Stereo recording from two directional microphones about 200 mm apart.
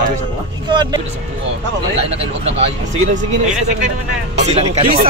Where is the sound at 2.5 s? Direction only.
35° right (ahead or behind).